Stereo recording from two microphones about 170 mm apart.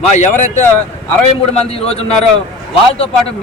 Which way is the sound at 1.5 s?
35° left (ahead or behind).